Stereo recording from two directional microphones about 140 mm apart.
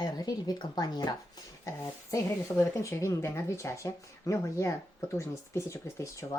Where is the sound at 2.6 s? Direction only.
20° left (ahead or behind).